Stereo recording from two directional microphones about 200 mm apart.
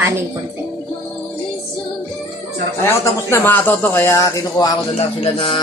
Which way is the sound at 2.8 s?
15° left (ahead or behind).